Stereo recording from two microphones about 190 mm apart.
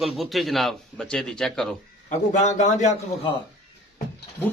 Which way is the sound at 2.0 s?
40° left (ahead or behind).